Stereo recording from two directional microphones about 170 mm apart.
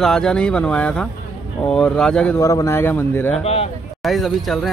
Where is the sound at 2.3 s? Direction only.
20° left (ahead or behind).